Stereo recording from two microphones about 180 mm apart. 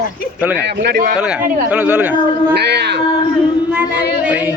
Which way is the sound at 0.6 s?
60° right (ahead or behind).